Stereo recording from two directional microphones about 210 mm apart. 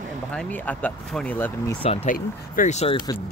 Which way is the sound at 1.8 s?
35° left (ahead or behind).